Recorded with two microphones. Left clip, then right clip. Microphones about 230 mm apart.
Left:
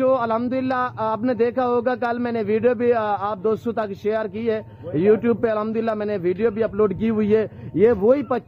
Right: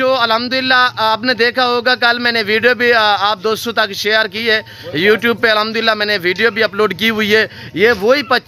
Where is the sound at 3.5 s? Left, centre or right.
Right.